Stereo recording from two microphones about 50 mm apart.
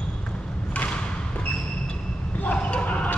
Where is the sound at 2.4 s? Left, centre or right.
Left.